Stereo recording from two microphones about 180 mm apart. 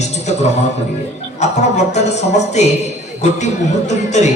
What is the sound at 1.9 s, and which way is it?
A man's voice, 40° left (ahead or behind).